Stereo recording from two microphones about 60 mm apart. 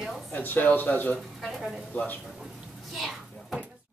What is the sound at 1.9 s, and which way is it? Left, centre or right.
Speech, left.